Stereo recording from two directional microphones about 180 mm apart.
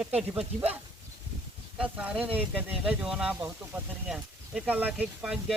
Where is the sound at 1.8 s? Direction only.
5° right (ahead or behind).